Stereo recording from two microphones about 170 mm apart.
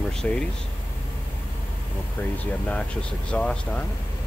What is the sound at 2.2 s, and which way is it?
Speech, 10° left (ahead or behind).